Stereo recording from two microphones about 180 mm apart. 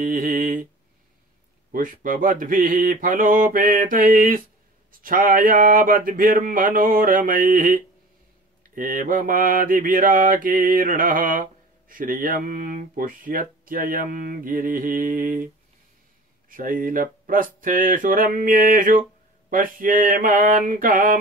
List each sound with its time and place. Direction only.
0.0 s a sound: 50° right (ahead or behind)
1.7 s speech: 50° right (ahead or behind)
16.4 s speech: 50° right (ahead or behind)